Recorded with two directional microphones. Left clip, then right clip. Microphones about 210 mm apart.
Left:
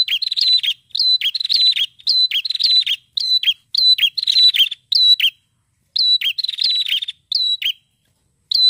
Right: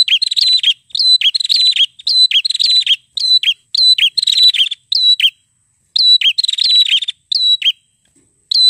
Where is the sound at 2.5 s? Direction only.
45° right (ahead or behind).